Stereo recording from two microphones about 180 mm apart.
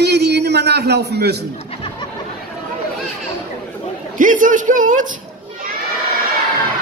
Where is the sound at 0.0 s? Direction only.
65° right (ahead or behind).